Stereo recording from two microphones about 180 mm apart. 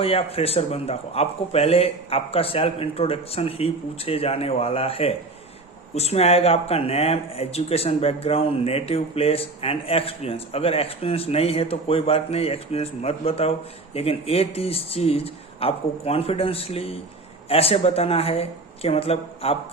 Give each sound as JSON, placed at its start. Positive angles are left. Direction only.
{"t": 0.0, "sound": "speech", "side_deg": 35}